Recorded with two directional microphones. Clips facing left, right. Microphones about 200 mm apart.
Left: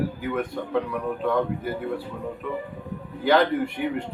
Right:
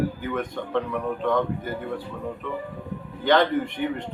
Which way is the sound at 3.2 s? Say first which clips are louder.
Even; 5° left (ahead or behind).